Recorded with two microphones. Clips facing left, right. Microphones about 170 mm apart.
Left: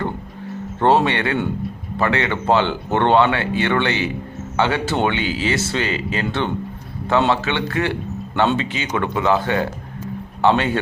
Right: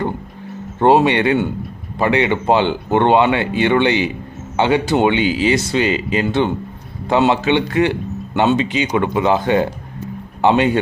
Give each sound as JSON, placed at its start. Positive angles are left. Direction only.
{"t": 0.8, "sound": "speech", "side_deg": -15}